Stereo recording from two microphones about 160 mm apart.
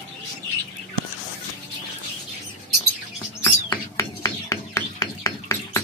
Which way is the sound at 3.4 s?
20° left (ahead or behind).